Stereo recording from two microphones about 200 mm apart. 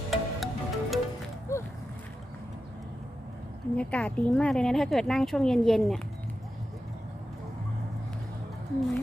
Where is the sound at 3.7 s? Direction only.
5° left (ahead or behind).